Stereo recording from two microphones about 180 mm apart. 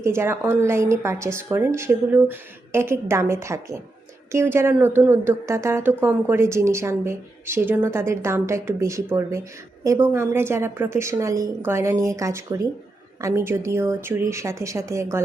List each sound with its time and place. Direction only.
0.0 s a woman's voice: 15° right (ahead or behind)